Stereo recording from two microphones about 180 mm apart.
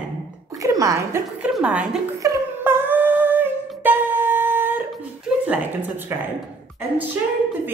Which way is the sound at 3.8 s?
10° right (ahead or behind).